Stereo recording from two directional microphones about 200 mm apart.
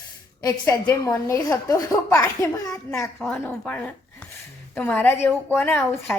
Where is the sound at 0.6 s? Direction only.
10° left (ahead or behind).